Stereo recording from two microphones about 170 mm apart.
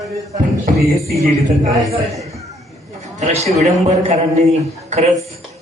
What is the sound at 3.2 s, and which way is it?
Speech, 40° right (ahead or behind).